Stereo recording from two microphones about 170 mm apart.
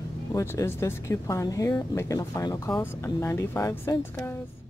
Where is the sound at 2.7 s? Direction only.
15° left (ahead or behind).